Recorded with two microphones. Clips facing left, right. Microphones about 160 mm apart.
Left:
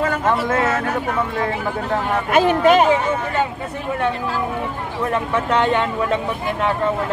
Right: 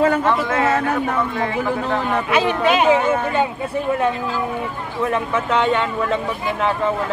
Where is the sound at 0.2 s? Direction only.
40° left (ahead or behind).